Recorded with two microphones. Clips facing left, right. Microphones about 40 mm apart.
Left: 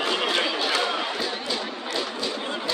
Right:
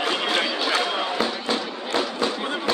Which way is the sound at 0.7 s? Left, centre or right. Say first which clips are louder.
Right 2 dB; right.